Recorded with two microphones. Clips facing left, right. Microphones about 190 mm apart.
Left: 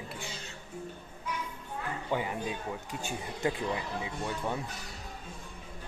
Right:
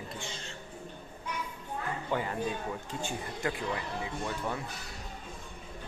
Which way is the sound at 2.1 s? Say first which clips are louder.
Even; 15° left (ahead or behind).